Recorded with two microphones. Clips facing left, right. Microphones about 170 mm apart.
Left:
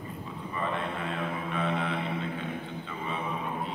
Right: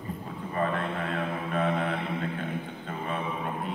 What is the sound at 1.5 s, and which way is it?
Mantra, 45° right (ahead or behind).